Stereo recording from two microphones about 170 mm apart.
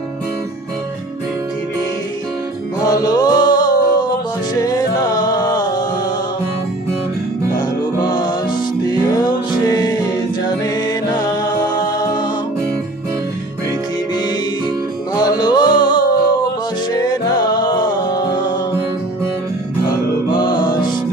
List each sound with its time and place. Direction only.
2.8 s music: 20° left (ahead or behind)
8.0 s music: 25° left (ahead or behind)
15.1 s music: 25° left (ahead or behind)
19.9 s music: 25° left (ahead or behind)